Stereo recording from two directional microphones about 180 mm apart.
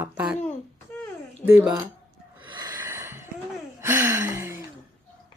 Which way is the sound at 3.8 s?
15° right (ahead or behind).